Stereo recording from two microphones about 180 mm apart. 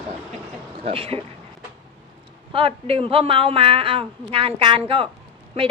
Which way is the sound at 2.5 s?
30° right (ahead or behind).